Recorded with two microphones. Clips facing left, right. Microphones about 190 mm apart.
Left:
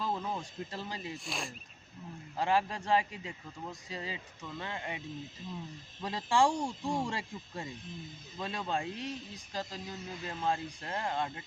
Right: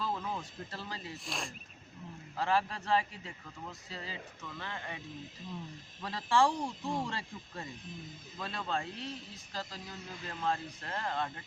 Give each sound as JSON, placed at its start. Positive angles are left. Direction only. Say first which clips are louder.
{"t": 0.0, "sound": "speech", "louder": "left 1 dB", "side_deg": 15}
{"t": 1.2, "sound": "speech", "louder": "left 1 dB", "side_deg": 0}
{"t": 2.3, "sound": "a man's voice", "louder": "left 1 dB", "side_deg": 15}